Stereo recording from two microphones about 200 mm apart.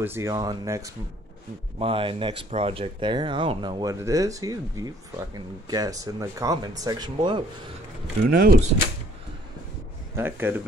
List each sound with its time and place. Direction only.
0.0 s speech: 15° right (ahead or behind)
1.8 s speech: 25° right (ahead or behind)
8.3 s speech: 45° right (ahead or behind)
10.1 s speech: 10° right (ahead or behind)